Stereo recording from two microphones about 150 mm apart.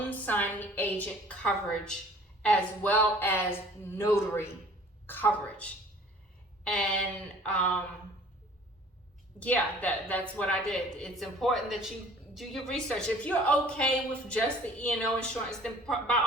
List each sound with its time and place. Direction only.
0.0 s a woman's voice: 10° left (ahead or behind)
9.4 s a woman's voice: 10° left (ahead or behind)